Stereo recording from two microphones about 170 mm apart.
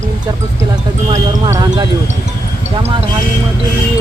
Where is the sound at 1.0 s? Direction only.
20° right (ahead or behind).